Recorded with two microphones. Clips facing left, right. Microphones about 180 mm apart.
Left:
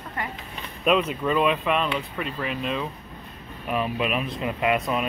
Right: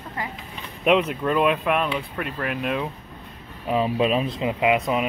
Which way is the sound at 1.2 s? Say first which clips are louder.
Right 1 dB; 10° right (ahead or behind).